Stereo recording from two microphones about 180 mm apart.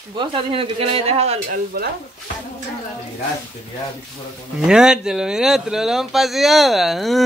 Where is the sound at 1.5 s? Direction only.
55° right (ahead or behind).